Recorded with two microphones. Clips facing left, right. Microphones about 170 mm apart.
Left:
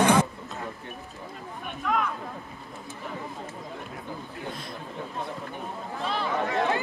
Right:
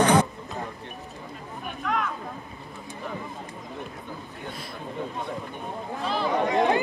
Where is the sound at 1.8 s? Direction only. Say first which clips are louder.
Left 1 dB; centre (ahead or behind).